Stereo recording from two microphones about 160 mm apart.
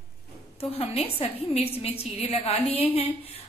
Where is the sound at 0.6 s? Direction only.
40° left (ahead or behind).